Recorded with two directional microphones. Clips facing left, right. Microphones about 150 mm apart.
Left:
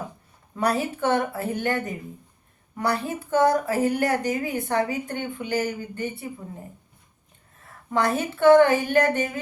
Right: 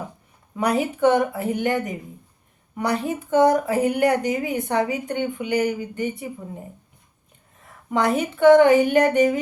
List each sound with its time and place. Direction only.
0.5 s speech: 15° right (ahead or behind)
7.9 s speech: 15° right (ahead or behind)